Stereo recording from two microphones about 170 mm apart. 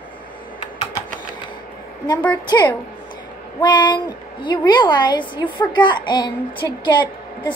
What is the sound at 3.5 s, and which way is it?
A woman's voice, 25° left (ahead or behind).